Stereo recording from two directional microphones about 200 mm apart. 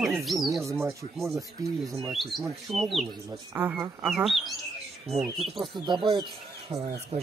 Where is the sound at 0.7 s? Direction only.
15° right (ahead or behind).